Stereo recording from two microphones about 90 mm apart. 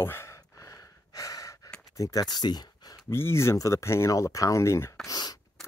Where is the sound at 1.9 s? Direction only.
40° left (ahead or behind).